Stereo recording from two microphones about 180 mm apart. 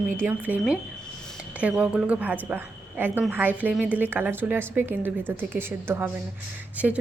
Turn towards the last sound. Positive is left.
turn(degrees=-10)  # may be behind; listen again after turning